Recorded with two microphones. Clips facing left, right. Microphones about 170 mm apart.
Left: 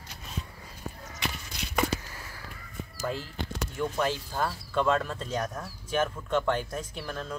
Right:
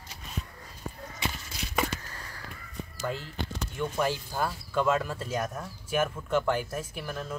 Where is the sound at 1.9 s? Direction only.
10° left (ahead or behind).